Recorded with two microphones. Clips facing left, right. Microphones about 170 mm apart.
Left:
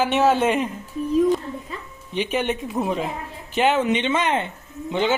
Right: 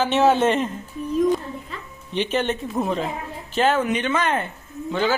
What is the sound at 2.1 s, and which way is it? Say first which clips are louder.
A man's voice: right 1 dB; 10° left (ahead or behind).